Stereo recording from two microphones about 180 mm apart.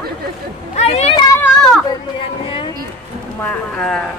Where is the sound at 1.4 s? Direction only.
5° left (ahead or behind).